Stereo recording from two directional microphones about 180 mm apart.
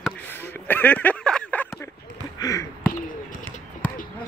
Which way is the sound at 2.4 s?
20° left (ahead or behind).